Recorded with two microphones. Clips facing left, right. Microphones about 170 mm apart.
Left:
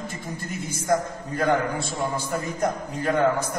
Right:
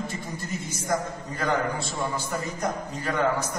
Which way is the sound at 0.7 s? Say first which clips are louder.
Left 5 dB; 50° left (ahead or behind).